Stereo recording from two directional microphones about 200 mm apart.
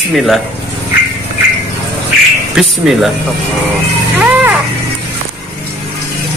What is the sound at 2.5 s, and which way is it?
Speech, centre (ahead or behind).